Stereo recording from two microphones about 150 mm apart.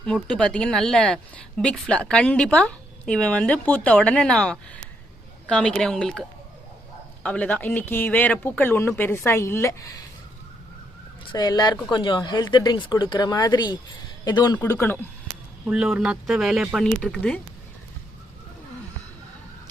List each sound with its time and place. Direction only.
0.0 s speech: 5° left (ahead or behind)
11.3 s speech: 25° left (ahead or behind)
14.6 s speech: 15° left (ahead or behind)
15.6 s speech: 5° right (ahead or behind)